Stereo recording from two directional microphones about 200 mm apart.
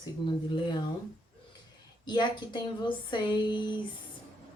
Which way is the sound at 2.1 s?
20° left (ahead or behind).